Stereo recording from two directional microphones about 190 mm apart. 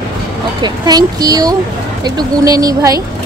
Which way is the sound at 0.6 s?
20° right (ahead or behind).